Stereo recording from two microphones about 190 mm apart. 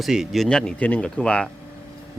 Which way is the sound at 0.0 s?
Centre (ahead or behind).